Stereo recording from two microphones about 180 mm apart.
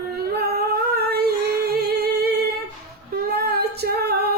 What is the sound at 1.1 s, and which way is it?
Singing, 60° right (ahead or behind).